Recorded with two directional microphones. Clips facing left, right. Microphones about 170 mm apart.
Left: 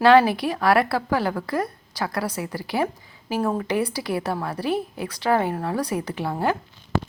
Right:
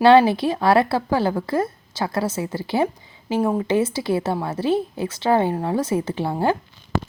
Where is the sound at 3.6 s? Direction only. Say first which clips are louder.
Right 4 dB; 25° right (ahead or behind).